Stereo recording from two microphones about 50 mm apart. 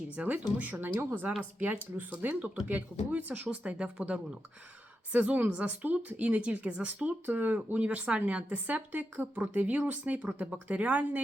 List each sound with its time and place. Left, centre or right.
0.2 s speech: right
5.1 s speech: right